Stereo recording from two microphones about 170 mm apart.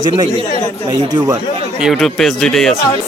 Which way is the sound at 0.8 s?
25° right (ahead or behind).